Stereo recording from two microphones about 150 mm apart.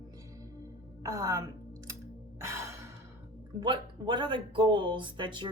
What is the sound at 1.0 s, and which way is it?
Speech, 25° right (ahead or behind).